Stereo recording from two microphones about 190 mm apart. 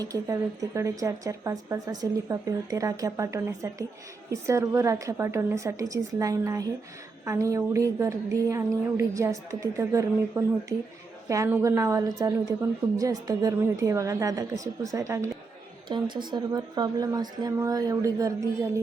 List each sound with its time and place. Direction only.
0.0 s a woman's voice: 20° right (ahead or behind)